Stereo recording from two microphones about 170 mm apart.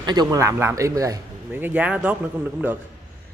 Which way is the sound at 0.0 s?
25° right (ahead or behind).